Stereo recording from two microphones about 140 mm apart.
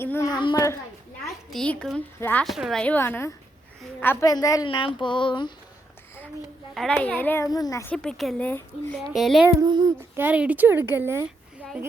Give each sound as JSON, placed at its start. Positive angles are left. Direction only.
{"t": 0.0, "sound": "a child's voice", "side_deg": 15}
{"t": 0.3, "sound": "speech", "side_deg": 35}
{"t": 1.2, "sound": "a child's voice", "side_deg": 0}
{"t": 2.8, "sound": "a child's voice", "side_deg": 10}
{"t": 4.3, "sound": "speech", "side_deg": 25}
{"t": 6.9, "sound": "a child's voice", "side_deg": 10}
{"t": 7.9, "sound": "a child's voice", "side_deg": 5}
{"t": 9.1, "sound": "a woman's voice", "side_deg": 0}
{"t": 9.5, "sound": "a sound", "side_deg": -25}
{"t": 10.2, "sound": "a woman's voice", "side_deg": -10}